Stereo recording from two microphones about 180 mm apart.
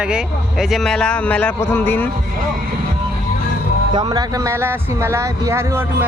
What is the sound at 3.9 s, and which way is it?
Speech, 20° right (ahead or behind).